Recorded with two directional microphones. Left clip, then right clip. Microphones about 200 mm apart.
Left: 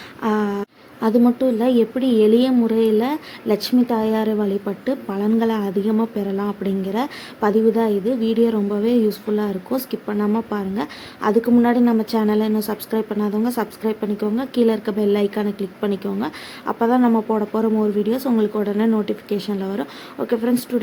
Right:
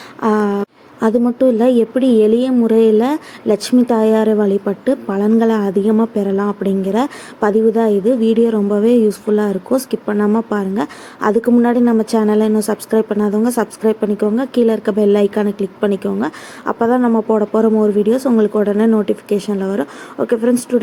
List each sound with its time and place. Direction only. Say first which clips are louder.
0.2 s speech: right 6 dB; 10° right (ahead or behind)